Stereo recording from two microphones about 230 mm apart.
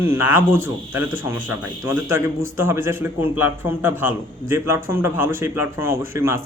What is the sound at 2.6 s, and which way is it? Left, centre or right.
A man's voice, centre.